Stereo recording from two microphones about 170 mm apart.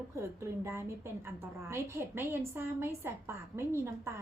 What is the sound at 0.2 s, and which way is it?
A woman's voice, 15° right (ahead or behind).